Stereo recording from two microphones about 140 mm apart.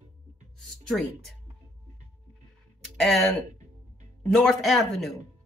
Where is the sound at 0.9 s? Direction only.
Centre (ahead or behind).